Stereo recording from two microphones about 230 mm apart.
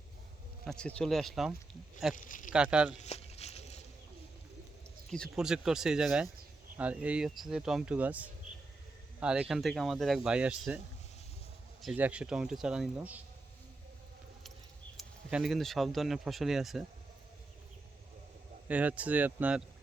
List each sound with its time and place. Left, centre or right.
0.6 s speech: centre
2.1 s speech: left
2.5 s speech: centre
3.0 s a sound: left
5.1 s speech: centre
11.8 s speech: centre
14.9 s speech: centre
18.7 s speech: centre